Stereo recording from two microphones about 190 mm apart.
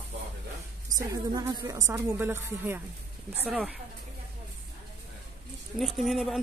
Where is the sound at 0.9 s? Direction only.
20° right (ahead or behind).